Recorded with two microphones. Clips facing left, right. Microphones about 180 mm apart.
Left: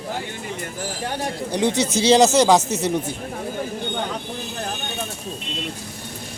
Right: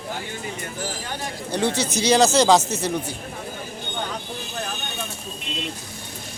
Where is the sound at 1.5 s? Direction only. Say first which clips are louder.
Left 2 dB; 15° left (ahead or behind).